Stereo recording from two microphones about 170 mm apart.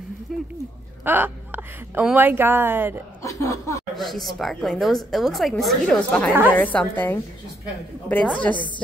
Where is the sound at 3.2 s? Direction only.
20° left (ahead or behind).